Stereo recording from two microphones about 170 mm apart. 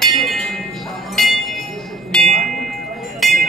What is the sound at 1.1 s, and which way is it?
Music, centre (ahead or behind).